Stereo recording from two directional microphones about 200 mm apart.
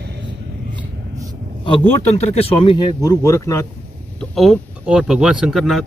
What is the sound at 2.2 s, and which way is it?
Speech, 30° left (ahead or behind).